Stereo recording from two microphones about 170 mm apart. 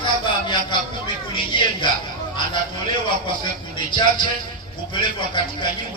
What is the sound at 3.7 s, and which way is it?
A man's voice, 30° left (ahead or behind).